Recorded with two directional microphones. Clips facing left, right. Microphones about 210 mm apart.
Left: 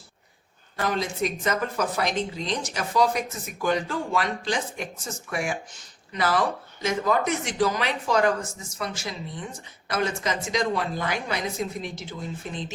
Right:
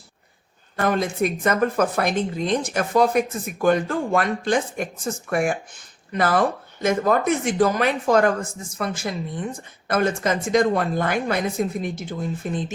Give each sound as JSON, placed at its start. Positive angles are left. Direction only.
{"t": 0.8, "sound": "speech", "side_deg": -55}